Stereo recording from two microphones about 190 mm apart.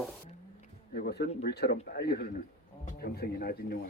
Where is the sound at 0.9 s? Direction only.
60° left (ahead or behind).